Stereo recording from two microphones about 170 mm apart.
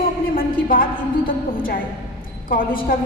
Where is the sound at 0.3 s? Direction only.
55° left (ahead or behind).